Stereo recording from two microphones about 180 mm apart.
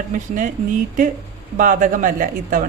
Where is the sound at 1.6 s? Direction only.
45° right (ahead or behind).